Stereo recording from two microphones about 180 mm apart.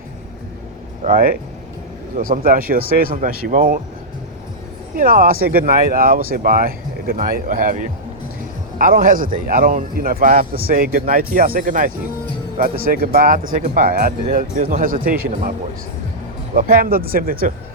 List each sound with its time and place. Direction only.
1.0 s speech: 50° right (ahead or behind)
4.9 s speech: 50° right (ahead or behind)
16.6 s speech: 50° right (ahead or behind)